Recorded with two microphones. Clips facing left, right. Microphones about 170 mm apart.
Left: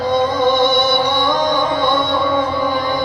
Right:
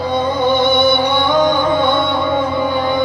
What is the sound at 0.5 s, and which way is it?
Music, 60° right (ahead or behind).